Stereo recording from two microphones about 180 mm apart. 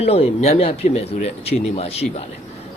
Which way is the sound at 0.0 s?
35° left (ahead or behind).